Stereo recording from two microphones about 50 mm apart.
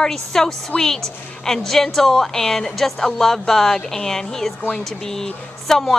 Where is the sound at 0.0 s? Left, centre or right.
Centre.